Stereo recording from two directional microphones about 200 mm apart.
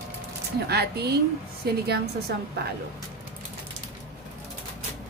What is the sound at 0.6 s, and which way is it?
Speech, 55° right (ahead or behind).